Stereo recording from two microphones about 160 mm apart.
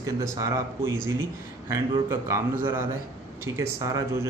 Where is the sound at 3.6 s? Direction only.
20° right (ahead or behind).